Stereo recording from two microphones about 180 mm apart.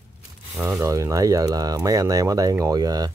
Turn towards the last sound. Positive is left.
turn(degrees=-20)  # may be behind; listen again after turning